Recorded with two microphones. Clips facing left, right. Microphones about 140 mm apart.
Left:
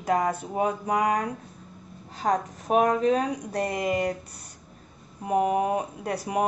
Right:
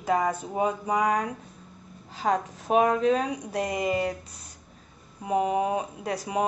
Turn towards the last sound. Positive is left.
turn(degrees=-15)  # may be behind; listen again after turning